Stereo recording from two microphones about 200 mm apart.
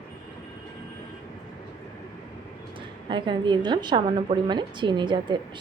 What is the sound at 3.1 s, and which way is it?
A woman's voice, 25° right (ahead or behind).